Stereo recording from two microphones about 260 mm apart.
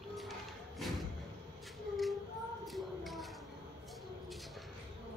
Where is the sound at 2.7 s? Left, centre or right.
Centre.